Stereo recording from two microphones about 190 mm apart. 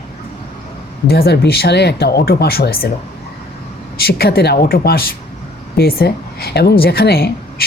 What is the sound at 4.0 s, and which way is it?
A woman's voice, 55° left (ahead or behind).